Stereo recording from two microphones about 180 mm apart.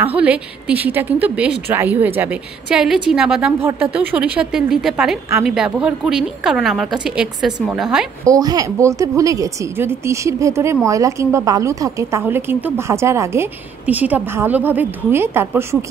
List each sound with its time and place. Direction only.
0.0 s a woman's voice: 10° right (ahead or behind)
8.3 s a woman's voice: 20° right (ahead or behind)